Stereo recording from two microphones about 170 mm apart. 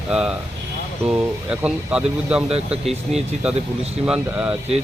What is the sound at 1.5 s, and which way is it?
Speech, 5° right (ahead or behind).